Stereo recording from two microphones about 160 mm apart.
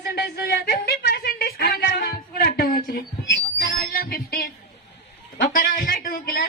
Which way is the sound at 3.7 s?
70° left (ahead or behind).